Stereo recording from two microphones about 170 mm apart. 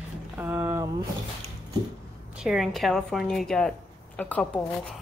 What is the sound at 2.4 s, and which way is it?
A woman's voice, centre (ahead or behind).